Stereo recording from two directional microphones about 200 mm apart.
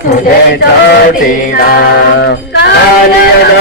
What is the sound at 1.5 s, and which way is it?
Music, 50° left (ahead or behind).